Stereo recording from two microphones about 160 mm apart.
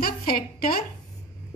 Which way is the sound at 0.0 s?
70° left (ahead or behind).